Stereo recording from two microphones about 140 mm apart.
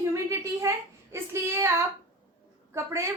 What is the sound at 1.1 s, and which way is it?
Child singing, 15° right (ahead or behind).